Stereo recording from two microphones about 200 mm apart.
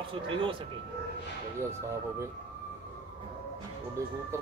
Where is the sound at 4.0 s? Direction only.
15° right (ahead or behind).